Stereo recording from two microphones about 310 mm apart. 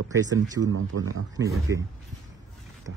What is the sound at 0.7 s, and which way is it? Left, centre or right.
Speech, right.